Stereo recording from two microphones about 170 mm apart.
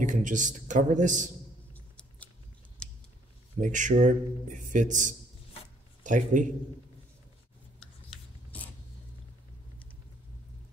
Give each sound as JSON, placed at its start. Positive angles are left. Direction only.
{"t": 0.0, "sound": "a man's voice", "side_deg": -45}
{"t": 1.7, "sound": "a sound", "side_deg": 10}
{"t": 2.8, "sound": "scissors", "side_deg": 5}
{"t": 3.5, "sound": "a man's voice", "side_deg": -45}